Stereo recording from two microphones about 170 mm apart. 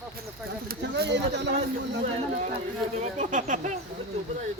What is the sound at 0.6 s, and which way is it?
Speech, 65° right (ahead or behind).